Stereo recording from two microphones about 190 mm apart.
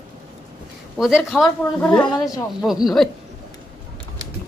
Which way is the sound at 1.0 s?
Centre (ahead or behind).